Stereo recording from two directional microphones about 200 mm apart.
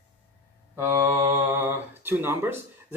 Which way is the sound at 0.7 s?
15° right (ahead or behind).